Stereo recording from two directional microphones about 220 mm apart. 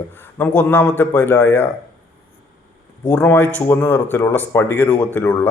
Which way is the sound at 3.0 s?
10° left (ahead or behind).